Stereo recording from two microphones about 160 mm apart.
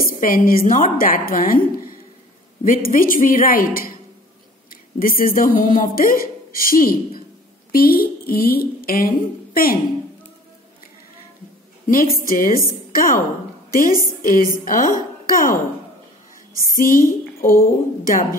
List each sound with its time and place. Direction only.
0.0 s a woman's voice: 60° left (ahead or behind)
4.9 s a woman's voice: 60° left (ahead or behind)
11.9 s a woman's voice: 60° left (ahead or behind)
16.7 s a woman's voice: 60° left (ahead or behind)